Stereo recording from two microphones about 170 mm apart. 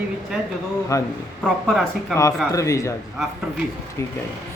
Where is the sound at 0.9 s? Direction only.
20° left (ahead or behind).